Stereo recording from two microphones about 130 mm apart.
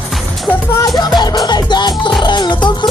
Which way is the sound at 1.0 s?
30° left (ahead or behind).